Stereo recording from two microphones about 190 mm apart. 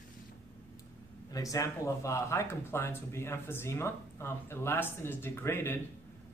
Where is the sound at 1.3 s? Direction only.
20° left (ahead or behind).